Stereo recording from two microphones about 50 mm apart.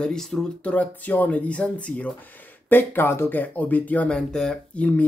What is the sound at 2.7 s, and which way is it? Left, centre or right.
Speech, left.